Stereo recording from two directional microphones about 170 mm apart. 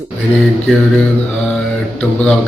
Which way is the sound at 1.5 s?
5° left (ahead or behind).